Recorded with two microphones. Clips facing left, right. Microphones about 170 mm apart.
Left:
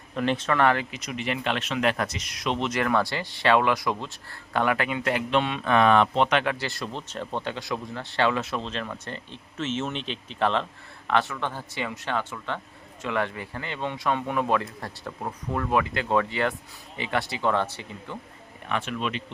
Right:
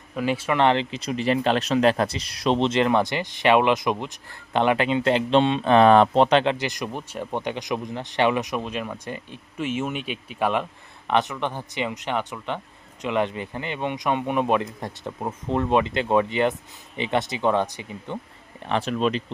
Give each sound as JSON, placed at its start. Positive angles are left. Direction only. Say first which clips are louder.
{"t": 0.1, "sound": "speech", "louder": "right 1 dB", "side_deg": -5}
{"t": 0.5, "sound": "speech", "louder": "right 4 dB", "side_deg": -20}
{"t": 18.6, "sound": "speech", "louder": "right 6 dB", "side_deg": -35}